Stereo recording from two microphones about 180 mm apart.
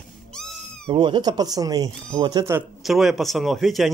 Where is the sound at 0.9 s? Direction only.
25° right (ahead or behind).